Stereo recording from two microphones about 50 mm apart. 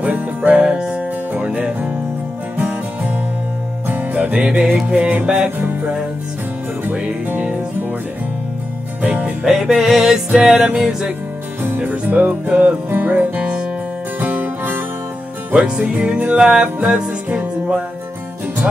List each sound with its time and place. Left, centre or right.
0.0 s music: right
0.7 s music: right
5.6 s music: right
9.0 s music: right
9.4 s music: centre
11.6 s music: right
12.9 s music: right
14.2 s music: right
15.5 s music: centre
17.3 s music: right